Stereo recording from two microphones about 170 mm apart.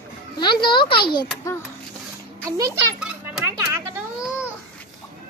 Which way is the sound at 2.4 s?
20° right (ahead or behind).